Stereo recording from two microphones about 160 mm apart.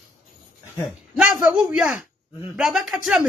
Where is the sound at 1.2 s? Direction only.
5° right (ahead or behind).